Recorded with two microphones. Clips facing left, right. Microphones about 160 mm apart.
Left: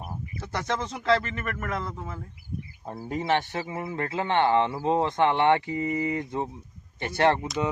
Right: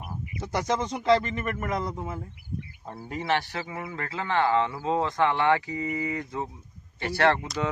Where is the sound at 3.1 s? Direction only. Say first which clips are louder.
Left 2 dB; 20° left (ahead or behind).